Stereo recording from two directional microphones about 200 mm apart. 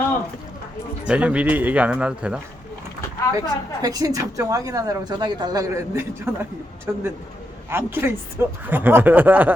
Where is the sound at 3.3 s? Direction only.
20° right (ahead or behind).